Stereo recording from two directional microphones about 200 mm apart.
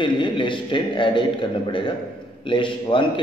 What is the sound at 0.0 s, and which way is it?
A man's voice, 25° left (ahead or behind).